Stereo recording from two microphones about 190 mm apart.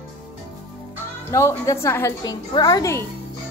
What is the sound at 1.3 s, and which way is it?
A child's voice, 15° left (ahead or behind).